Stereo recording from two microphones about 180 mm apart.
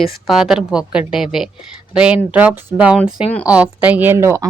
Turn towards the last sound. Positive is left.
turn(degrees=-15)  # may be behind; listen again after turning